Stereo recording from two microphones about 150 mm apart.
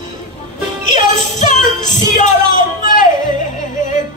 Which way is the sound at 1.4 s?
55° left (ahead or behind).